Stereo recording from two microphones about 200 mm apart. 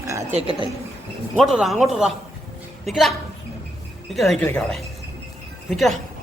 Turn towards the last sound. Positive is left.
turn(degrees=0)  # may be behind; listen again after turning